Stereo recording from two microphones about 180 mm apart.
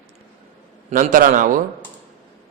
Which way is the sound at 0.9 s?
45° right (ahead or behind).